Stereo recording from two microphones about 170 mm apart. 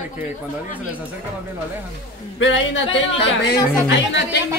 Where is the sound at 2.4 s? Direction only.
90° left.